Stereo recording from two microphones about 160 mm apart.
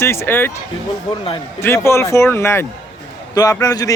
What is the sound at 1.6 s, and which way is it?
A man's voice, 15° left (ahead or behind).